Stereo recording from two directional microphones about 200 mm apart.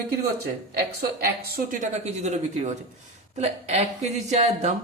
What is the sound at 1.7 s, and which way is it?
Speech, 35° right (ahead or behind).